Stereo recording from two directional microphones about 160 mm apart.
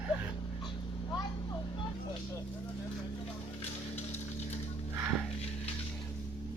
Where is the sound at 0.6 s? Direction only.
30° left (ahead or behind).